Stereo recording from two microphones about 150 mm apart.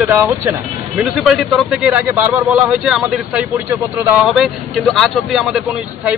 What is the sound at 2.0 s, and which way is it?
Speech, 20° right (ahead or behind).